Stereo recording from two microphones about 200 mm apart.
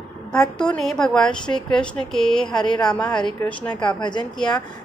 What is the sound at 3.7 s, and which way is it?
Speech, 20° left (ahead or behind).